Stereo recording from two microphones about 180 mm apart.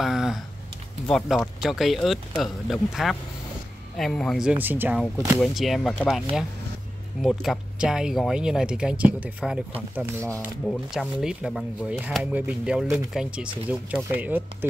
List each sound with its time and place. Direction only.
0.0 s typing: centre (ahead or behind)
1.0 s speech: centre (ahead or behind); by 5.4 s 15° right (ahead or behind)
5.4 s speech: centre (ahead or behind)
10.3 s speech: 5° left (ahead or behind)